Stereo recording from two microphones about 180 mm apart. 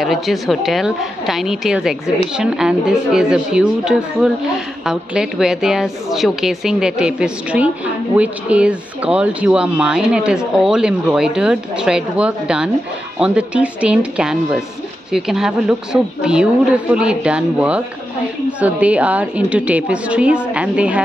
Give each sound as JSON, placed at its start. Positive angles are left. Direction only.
{"t": 0.0, "sound": "a woman's voice", "side_deg": 0}